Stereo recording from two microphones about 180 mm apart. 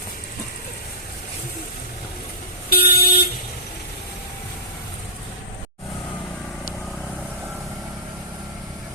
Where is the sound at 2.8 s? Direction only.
60° left (ahead or behind).